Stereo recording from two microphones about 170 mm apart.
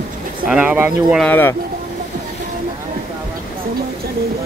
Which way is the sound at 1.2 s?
10° left (ahead or behind).